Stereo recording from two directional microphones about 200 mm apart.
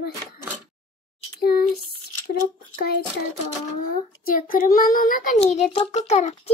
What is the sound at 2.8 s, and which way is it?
Child singing, 50° left (ahead or behind).